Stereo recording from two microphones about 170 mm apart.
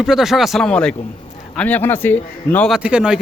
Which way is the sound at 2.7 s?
5° right (ahead or behind).